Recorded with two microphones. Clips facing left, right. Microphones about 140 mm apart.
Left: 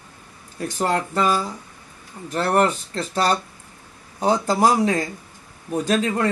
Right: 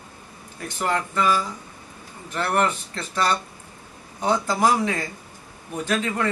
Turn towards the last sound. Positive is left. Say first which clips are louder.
# left 4 dB
turn(degrees=35)  # may be behind; listen again after turning